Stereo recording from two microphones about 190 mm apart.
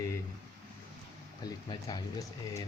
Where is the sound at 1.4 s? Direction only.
20° left (ahead or behind).